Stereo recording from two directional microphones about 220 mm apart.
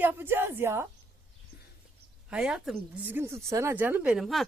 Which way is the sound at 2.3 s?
5° right (ahead or behind).